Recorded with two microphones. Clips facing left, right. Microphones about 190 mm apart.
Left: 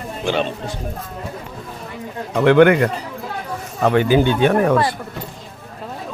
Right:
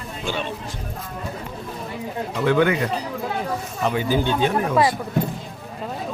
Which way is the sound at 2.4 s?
70° left (ahead or behind).